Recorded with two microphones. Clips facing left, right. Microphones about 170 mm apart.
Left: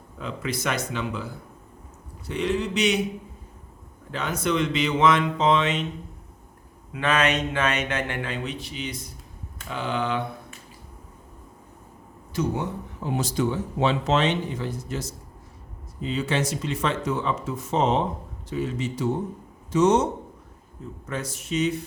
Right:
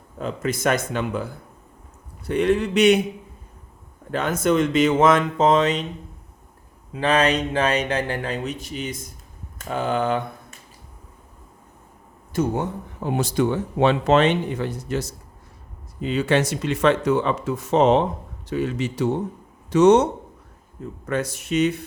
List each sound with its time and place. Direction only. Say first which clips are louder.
0.2 s speech: right 5 dB; 45° right (ahead or behind)
4.1 s speech: right 5 dB; 50° right (ahead or behind)
6.9 s speech: right 4 dB; 30° right (ahead or behind)
12.3 s speech: right 3 dB; 50° right (ahead or behind); by 20.1 s 70° right (ahead or behind)
21.1 s speech: right 6 dB; 65° right (ahead or behind)